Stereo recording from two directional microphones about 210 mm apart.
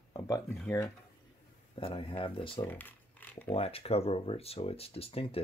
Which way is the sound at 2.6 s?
10° left (ahead or behind).